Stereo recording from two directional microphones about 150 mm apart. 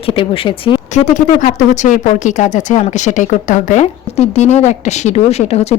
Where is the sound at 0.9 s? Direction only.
55° left (ahead or behind).